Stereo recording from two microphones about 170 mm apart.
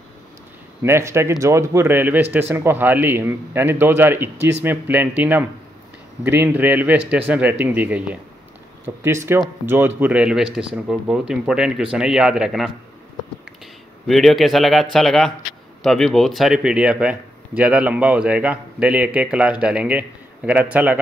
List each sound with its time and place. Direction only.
0.8 s speech: 15° right (ahead or behind)
14.0 s speech: centre (ahead or behind)